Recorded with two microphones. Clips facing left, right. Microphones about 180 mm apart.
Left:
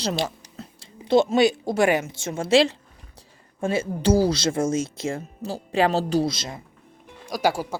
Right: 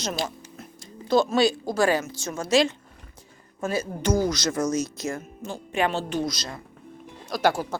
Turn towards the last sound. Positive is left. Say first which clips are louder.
# even
turn(degrees=10)  # may be behind; listen again after turning